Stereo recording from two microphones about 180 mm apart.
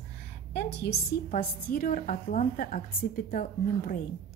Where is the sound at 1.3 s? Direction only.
50° left (ahead or behind).